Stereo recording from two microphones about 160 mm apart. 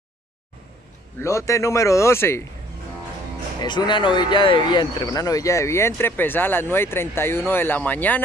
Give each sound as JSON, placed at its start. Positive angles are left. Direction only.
{"t": 1.2, "sound": "speech", "side_deg": 15}
{"t": 3.6, "sound": "speech", "side_deg": 30}